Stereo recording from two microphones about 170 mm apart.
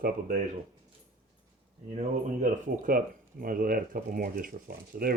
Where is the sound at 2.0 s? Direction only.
50° right (ahead or behind).